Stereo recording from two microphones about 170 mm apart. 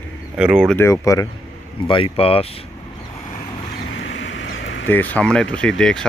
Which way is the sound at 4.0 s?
90° left.